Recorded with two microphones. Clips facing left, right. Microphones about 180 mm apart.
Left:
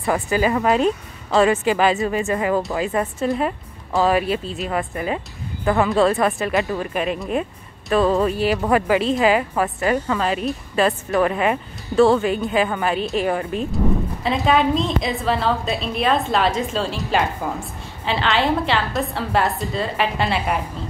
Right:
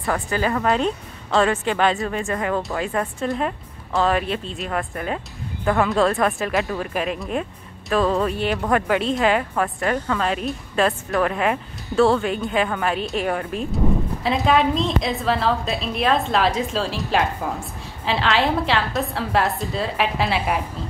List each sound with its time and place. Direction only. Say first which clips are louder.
0.0 s a woman's voice: left 3 dB; 5° left (ahead or behind)